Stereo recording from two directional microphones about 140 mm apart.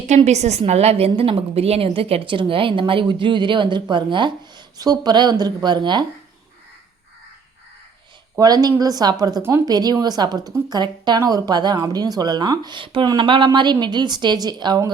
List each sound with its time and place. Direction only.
0.3 s a woman's voice: 55° right (ahead or behind); by 6.1 s 30° right (ahead or behind)
8.4 s a woman's voice: 30° right (ahead or behind)